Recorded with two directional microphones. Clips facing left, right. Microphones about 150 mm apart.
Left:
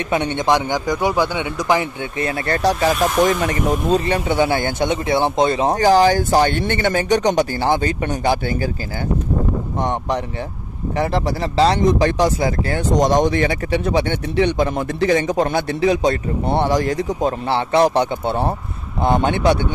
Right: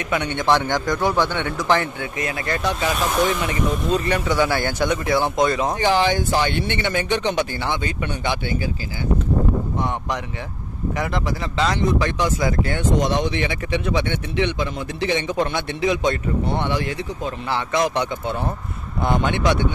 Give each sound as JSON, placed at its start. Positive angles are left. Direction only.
{"t": 0.1, "sound": "a man's voice", "side_deg": 25}
{"t": 2.1, "sound": "speech", "side_deg": 30}
{"t": 4.0, "sound": "speech", "side_deg": 25}
{"t": 5.8, "sound": "speech", "side_deg": 40}
{"t": 11.0, "sound": "speech", "side_deg": 30}